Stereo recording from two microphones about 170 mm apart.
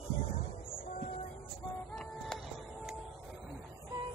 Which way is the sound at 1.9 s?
5° left (ahead or behind).